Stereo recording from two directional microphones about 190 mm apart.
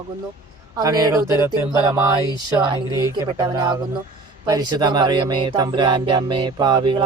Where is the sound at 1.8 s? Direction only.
20° right (ahead or behind).